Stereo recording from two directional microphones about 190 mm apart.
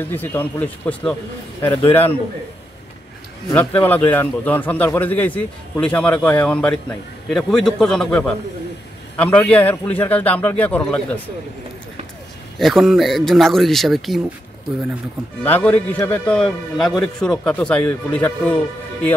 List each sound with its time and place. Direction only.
0.0 s a man's voice: 10° left (ahead or behind)
3.4 s a man's voice: 10° left (ahead or behind)
12.5 s speech: centre (ahead or behind)
15.4 s a man's voice: 10° left (ahead or behind)